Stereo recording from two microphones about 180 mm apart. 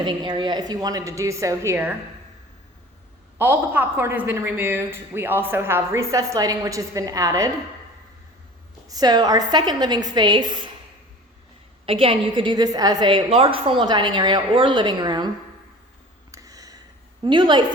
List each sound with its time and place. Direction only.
0.0 s a woman's voice: 25° right (ahead or behind)
3.3 s a woman's voice: 10° right (ahead or behind)
8.9 s a woman's voice: 20° right (ahead or behind)
11.9 s a woman's voice: 30° right (ahead or behind)
16.3 s a sound: 20° right (ahead or behind)
17.2 s a woman's voice: 25° right (ahead or behind)